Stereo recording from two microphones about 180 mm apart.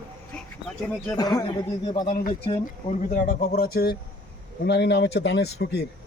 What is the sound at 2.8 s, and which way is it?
Speech, 45° left (ahead or behind).